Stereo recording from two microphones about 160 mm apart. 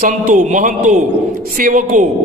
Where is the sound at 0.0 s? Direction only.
55° right (ahead or behind).